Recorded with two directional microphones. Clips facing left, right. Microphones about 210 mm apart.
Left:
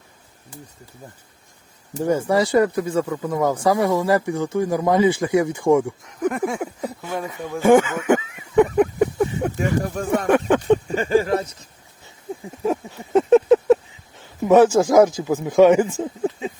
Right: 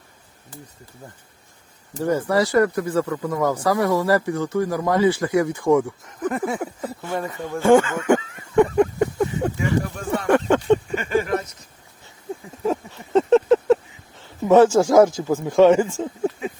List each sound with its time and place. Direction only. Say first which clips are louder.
2.0 s speech: left 1 dB; 15° left (ahead or behind)
6.1 s speech: left 2 dB; centre (ahead or behind)
7.6 s speech: left 1 dB; 15° left (ahead or behind)
8.1 s a sound: left 1 dB; 10° left (ahead or behind)
9.6 s speech: left 1 dB; 40° left (ahead or behind)
10.2 s speech: right 1 dB; 15° left (ahead or behind)
10.8 s a sound: left 3 dB; 35° left (ahead or behind)
12.6 s a sound: left 1 dB; 10° left (ahead or behind)
14.4 s speech: even; 15° left (ahead or behind)